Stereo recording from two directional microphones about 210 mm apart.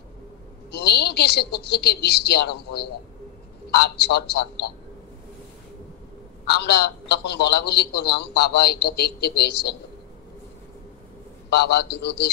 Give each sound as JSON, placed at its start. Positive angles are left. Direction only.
{"t": 0.7, "sound": "a man's voice", "side_deg": 50}
{"t": 6.4, "sound": "a man's voice", "side_deg": 50}
{"t": 11.5, "sound": "a man's voice", "side_deg": 50}